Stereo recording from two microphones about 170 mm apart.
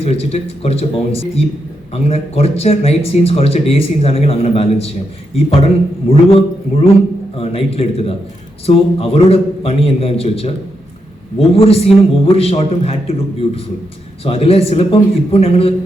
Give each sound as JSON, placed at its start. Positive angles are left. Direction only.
{"t": 0.0, "sound": "speech", "side_deg": 35}
{"t": 14.3, "sound": "speech", "side_deg": 35}